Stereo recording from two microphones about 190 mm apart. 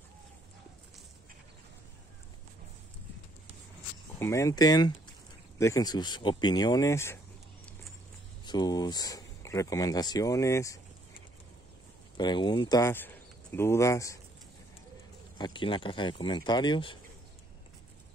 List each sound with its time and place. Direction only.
4.2 s speech: 15° left (ahead or behind)
8.5 s speech: 20° left (ahead or behind)
12.2 s speech: 25° left (ahead or behind)
15.3 s speech: 25° left (ahead or behind)